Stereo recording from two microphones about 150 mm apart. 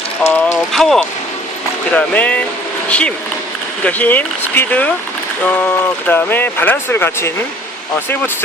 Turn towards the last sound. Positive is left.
turn(degrees=15)  # may be behind; listen again after turning